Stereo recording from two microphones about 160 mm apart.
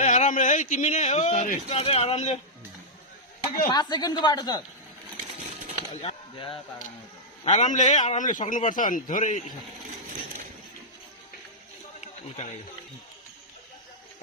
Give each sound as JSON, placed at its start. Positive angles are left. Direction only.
{"t": 0.0, "sound": "a man's voice", "side_deg": 50}
{"t": 3.7, "sound": "speech", "side_deg": 25}
{"t": 6.0, "sound": "speech", "side_deg": 35}
{"t": 7.4, "sound": "a man's voice", "side_deg": 45}
{"t": 11.9, "sound": "a sound", "side_deg": 45}